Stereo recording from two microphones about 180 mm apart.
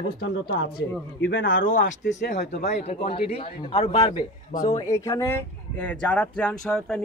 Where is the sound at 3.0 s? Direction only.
35° left (ahead or behind).